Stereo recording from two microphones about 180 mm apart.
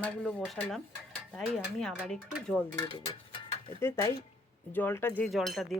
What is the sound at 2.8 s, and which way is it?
Speech, 30° left (ahead or behind).